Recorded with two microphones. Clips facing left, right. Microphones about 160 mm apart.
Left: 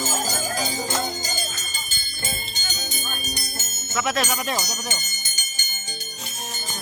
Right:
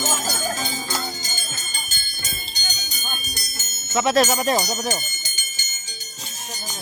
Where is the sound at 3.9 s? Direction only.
30° right (ahead or behind).